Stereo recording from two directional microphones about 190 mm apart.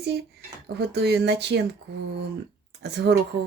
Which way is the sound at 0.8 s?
60° right (ahead or behind).